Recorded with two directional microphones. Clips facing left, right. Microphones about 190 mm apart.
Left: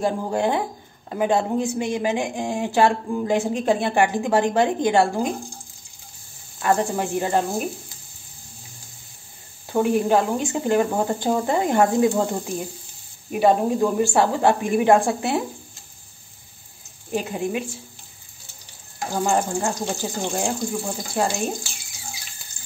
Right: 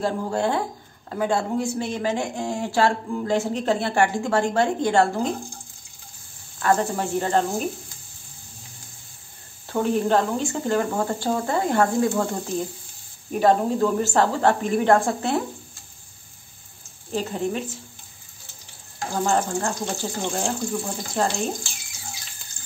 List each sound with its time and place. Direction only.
0.0 s speech: 15° left (ahead or behind)
6.6 s speech: 15° left (ahead or behind)
9.7 s speech: 15° left (ahead or behind)
17.1 s speech: 10° left (ahead or behind)
19.2 s speech: 15° left (ahead or behind)